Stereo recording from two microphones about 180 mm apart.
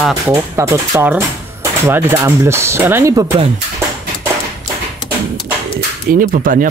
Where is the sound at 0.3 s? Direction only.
15° right (ahead or behind).